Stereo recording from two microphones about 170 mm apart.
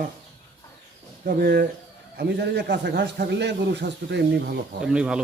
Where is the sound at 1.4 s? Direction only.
65° right (ahead or behind).